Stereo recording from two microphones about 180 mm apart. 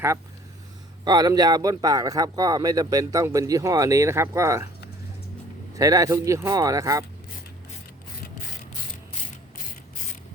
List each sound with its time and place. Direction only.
1.0 s speech: 20° right (ahead or behind)
5.7 s speech: 20° right (ahead or behind)